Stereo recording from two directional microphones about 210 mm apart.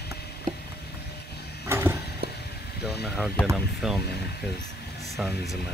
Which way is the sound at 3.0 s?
5° right (ahead or behind).